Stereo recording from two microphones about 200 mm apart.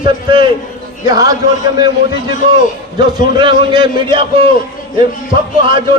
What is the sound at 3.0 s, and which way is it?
A man's voice, 25° right (ahead or behind).